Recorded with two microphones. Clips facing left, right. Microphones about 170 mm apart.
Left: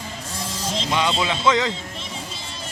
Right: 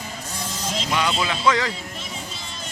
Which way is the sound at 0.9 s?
25° left (ahead or behind).